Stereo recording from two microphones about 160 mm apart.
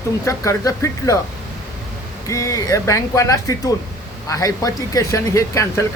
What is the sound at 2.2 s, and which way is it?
Speech, 20° left (ahead or behind).